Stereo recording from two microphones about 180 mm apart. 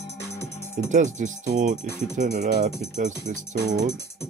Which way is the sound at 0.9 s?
45° right (ahead or behind).